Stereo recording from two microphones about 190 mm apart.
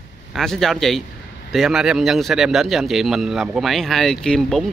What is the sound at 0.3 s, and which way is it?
Speech, centre (ahead or behind).